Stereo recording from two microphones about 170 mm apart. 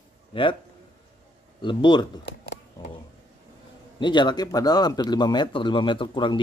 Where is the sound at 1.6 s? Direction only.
25° left (ahead or behind).